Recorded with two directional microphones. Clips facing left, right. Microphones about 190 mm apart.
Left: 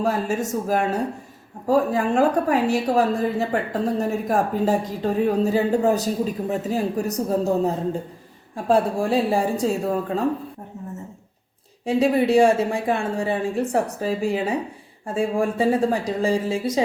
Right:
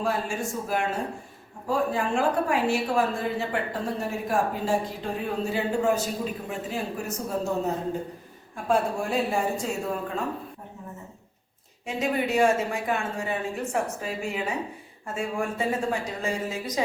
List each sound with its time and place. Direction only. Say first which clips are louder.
0.0 s a woman's voice: left 5 dB; 40° left (ahead or behind)
11.9 s a woman's voice: left 8 dB; 35° left (ahead or behind)